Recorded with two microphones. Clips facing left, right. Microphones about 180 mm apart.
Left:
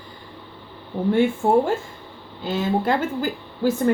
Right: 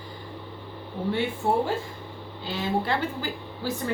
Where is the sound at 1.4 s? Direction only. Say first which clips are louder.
Left 6 dB; 50° left (ahead or behind).